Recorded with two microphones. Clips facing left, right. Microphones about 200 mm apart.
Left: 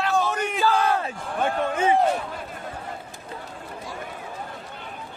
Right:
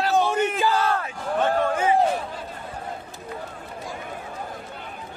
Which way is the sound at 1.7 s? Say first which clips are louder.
Even; 25° left (ahead or behind).